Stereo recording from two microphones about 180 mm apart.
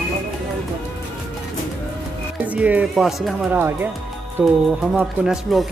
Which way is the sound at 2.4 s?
10° right (ahead or behind).